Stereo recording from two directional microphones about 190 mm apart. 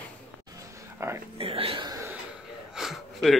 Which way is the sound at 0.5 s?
15° right (ahead or behind).